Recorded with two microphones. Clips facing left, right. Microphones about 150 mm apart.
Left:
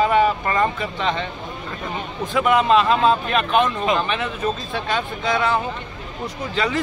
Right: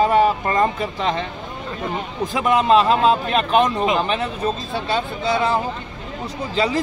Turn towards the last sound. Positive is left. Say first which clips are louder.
# right 2 dB
turn(degrees=-30)  # may be behind; listen again after turning